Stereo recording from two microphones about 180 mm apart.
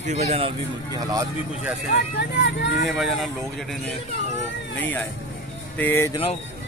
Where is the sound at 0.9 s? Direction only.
20° right (ahead or behind).